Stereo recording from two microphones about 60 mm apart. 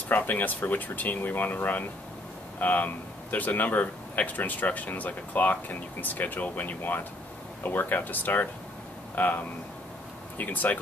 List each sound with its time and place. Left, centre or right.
0.1 s speech: left